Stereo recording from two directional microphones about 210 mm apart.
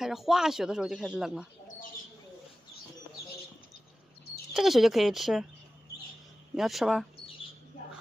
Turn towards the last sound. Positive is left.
turn(degrees=0)  # may be behind; listen again after turning